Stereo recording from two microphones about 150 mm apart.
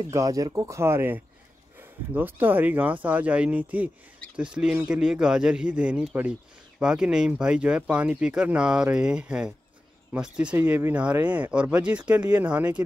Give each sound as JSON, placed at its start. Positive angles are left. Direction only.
{"t": 0.1, "sound": "speech", "side_deg": -25}